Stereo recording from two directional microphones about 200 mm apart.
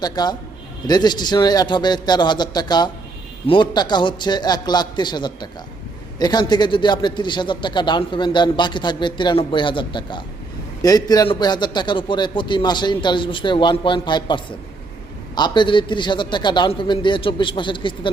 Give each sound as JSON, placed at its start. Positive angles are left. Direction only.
{"t": 0.0, "sound": "a man's voice", "side_deg": 20}